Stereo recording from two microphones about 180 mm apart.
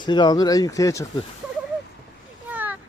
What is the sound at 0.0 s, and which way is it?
Speech, 25° left (ahead or behind).